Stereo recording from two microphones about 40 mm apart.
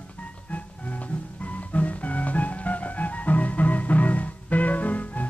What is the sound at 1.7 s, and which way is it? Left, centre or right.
Music, left.